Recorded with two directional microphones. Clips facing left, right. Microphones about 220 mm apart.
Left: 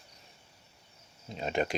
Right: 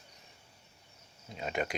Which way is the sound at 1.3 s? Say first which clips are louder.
Left 4 dB; 30° left (ahead or behind).